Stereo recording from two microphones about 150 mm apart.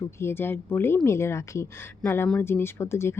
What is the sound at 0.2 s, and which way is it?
Speech, 15° left (ahead or behind).